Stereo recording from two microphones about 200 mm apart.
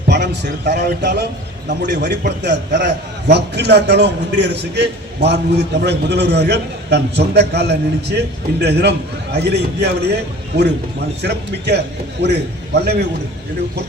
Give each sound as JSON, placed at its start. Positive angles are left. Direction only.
{"t": 0.1, "sound": "a man's voice", "side_deg": -60}
{"t": 11.2, "sound": "a man's voice", "side_deg": -55}